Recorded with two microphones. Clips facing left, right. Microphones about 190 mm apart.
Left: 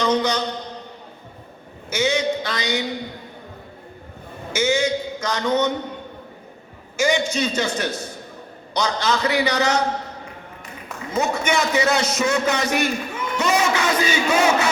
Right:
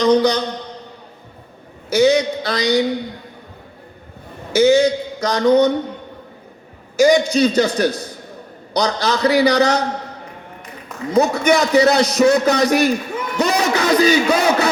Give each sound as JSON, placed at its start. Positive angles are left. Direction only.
{"t": 0.0, "sound": "a sound", "side_deg": -35}
{"t": 1.9, "sound": "a man's voice", "side_deg": -35}
{"t": 4.5, "sound": "a man's voice", "side_deg": -35}
{"t": 6.9, "sound": "a man's voice", "side_deg": -35}
{"t": 11.1, "sound": "a man's voice", "side_deg": -35}